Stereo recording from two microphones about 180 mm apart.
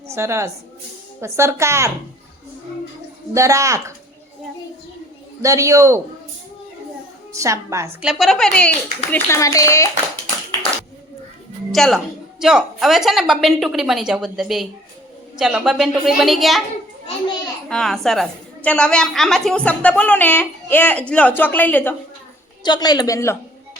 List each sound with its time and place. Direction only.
0.1 s speech: 15° right (ahead or behind)
3.3 s speech: 15° right (ahead or behind)
5.4 s speech: 15° right (ahead or behind)
7.3 s speech: 15° right (ahead or behind)
8.0 s a woman's voice: centre (ahead or behind); by 9.9 s 15° left (ahead or behind)
11.7 s a woman's voice: centre (ahead or behind)
17.7 s a woman's voice: centre (ahead or behind)
22.6 s speech: 25° left (ahead or behind)